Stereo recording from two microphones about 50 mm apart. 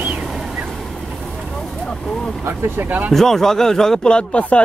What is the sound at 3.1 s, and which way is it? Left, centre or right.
Speech, centre.